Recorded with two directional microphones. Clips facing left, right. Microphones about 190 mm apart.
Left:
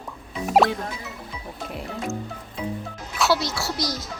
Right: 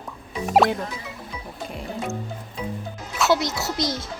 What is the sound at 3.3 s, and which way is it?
Speech, 20° right (ahead or behind).